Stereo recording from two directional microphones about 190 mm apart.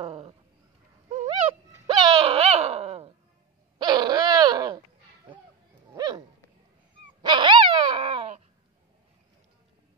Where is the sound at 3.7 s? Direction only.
20° right (ahead or behind).